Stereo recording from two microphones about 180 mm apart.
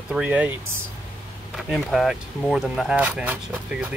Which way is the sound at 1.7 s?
Centre (ahead or behind).